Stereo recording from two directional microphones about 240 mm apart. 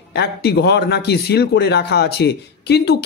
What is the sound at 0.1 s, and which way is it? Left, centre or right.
A man's voice, left.